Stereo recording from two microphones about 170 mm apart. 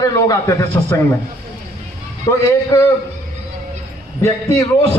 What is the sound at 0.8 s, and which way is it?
Speech, 15° left (ahead or behind).